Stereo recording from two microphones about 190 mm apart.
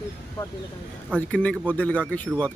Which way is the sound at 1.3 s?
5° left (ahead or behind).